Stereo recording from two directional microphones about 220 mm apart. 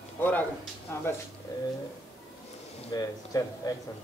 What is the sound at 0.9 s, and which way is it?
Speech, 10° left (ahead or behind).